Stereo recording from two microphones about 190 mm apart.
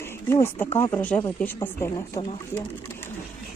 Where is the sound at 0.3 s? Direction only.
15° left (ahead or behind).